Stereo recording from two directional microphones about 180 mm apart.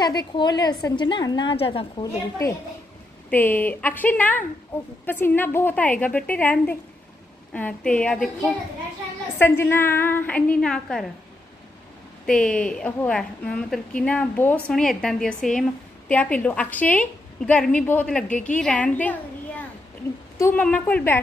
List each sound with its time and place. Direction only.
0.0 s a woman's voice: 25° left (ahead or behind)
3.3 s a woman's voice: 10° left (ahead or behind)
9.4 s a woman's voice: 10° left (ahead or behind)
12.3 s a woman's voice: 5° left (ahead or behind)